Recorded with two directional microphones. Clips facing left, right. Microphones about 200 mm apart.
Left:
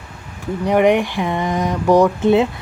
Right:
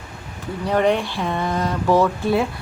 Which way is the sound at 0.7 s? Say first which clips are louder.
Left 4 dB; 15° left (ahead or behind).